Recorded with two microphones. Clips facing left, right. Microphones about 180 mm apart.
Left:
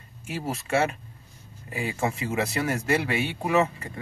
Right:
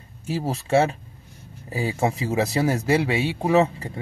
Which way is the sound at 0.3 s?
35° right (ahead or behind).